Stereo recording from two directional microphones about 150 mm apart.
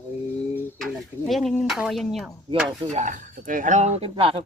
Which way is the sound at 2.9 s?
60° right (ahead or behind).